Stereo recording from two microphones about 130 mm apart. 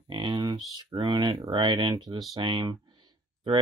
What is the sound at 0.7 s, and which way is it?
Speech, 35° right (ahead or behind).